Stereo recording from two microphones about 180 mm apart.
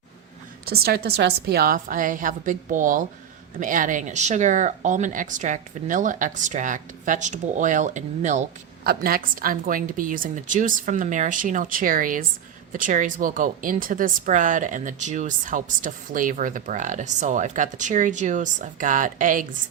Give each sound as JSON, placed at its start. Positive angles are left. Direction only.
{"t": 0.6, "sound": "speech", "side_deg": -60}